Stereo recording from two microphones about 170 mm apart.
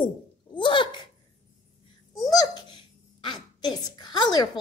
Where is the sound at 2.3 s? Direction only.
25° left (ahead or behind).